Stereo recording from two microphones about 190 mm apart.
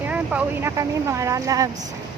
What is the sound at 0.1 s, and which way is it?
Speech, 5° right (ahead or behind).